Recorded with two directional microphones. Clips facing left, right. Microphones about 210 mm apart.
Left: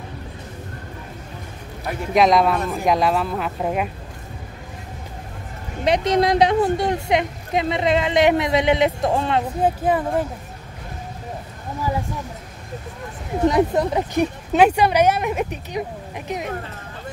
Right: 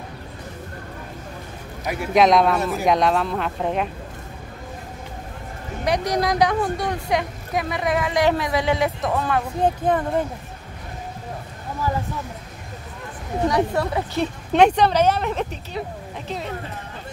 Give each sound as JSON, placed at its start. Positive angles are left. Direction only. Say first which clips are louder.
{"t": 1.9, "sound": "speech", "louder": "even", "side_deg": -5}
{"t": 5.9, "sound": "a woman's voice", "louder": "left 4 dB", "side_deg": 25}
{"t": 9.6, "sound": "speech", "louder": "right 1 dB", "side_deg": 5}
{"t": 13.5, "sound": "a woman's voice", "louder": "left 4 dB", "side_deg": 20}
{"t": 14.5, "sound": "speech", "louder": "even", "side_deg": 5}